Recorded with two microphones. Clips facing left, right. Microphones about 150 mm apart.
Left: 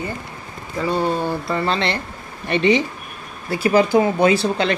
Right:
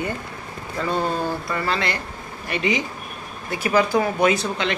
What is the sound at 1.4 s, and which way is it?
Speech, 25° left (ahead or behind).